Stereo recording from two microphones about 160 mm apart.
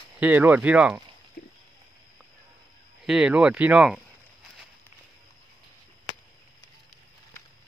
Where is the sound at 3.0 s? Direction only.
5° right (ahead or behind).